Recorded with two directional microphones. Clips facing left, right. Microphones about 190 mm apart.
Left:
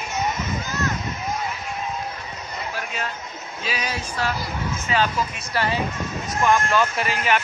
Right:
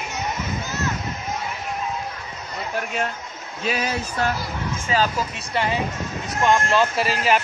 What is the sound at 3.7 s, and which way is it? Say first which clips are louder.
Speech: right 4 dB; 45° right (ahead or behind).